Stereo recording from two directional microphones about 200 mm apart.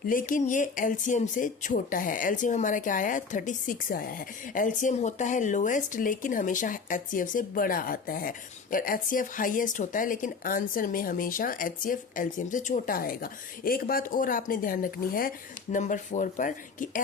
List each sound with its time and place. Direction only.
0.1 s speech: 45° left (ahead or behind)